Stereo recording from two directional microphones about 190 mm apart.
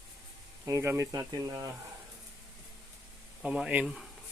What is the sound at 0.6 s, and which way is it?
Speech, 15° right (ahead or behind).